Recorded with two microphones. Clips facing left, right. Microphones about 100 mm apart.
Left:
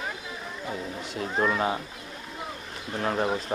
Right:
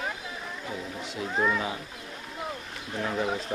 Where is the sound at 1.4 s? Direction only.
45° left (ahead or behind).